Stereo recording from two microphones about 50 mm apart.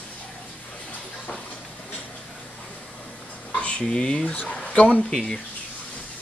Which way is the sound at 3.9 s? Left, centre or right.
Centre.